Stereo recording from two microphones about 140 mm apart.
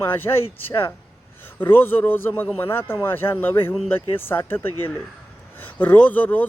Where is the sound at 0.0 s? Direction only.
15° left (ahead or behind).